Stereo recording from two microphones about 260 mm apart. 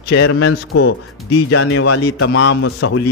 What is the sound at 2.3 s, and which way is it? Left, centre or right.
Speech, left.